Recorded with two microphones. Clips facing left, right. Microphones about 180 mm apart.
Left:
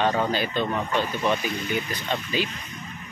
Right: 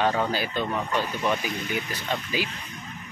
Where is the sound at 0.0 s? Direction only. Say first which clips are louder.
Left 1 dB; 5° right (ahead or behind).